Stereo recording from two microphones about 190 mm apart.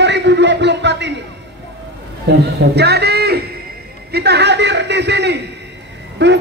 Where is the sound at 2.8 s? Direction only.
60° right (ahead or behind).